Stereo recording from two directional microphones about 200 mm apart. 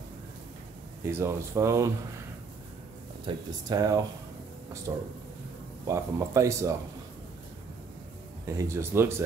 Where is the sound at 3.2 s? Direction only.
20° right (ahead or behind).